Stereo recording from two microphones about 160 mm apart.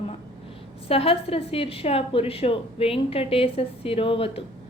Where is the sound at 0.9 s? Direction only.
35° left (ahead or behind).